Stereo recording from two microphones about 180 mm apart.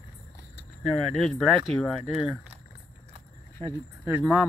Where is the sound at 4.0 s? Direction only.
5° right (ahead or behind).